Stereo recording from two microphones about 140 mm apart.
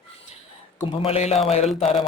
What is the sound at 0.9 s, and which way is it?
Speech, 45° left (ahead or behind).